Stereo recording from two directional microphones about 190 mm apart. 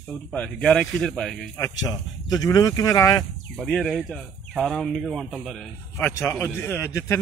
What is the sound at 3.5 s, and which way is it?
Speech, 5° left (ahead or behind).